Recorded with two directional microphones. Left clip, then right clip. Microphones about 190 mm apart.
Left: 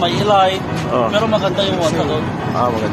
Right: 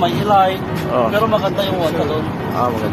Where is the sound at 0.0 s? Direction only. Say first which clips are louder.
Even; 25° left (ahead or behind).